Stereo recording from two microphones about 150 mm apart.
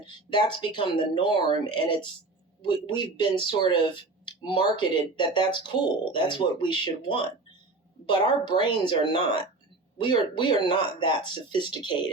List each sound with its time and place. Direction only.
0.0 s speech: 30° left (ahead or behind)
8.3 s speech: 30° left (ahead or behind)